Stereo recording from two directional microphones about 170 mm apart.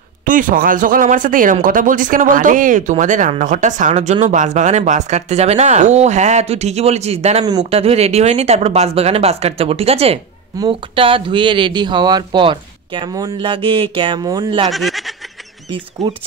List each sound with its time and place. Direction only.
0.2 s a man's voice: 50° right (ahead or behind); by 14.7 s 25° right (ahead or behind)
14.7 s speech: centre (ahead or behind)
15.7 s speech: 30° right (ahead or behind)